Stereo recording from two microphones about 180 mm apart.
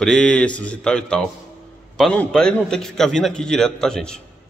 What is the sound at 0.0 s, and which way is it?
Speech, 5° left (ahead or behind).